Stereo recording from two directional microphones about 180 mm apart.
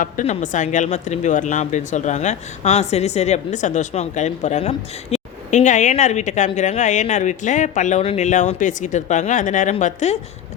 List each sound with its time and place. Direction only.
0.0 s a woman's voice: 45° left (ahead or behind)